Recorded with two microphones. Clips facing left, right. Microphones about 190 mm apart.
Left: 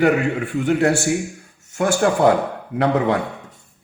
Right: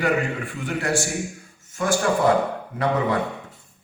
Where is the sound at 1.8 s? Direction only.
65° left (ahead or behind).